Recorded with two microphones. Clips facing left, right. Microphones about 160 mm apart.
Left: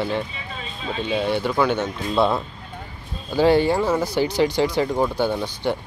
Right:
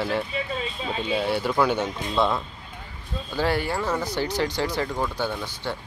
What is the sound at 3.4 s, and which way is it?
Speech, 20° left (ahead or behind).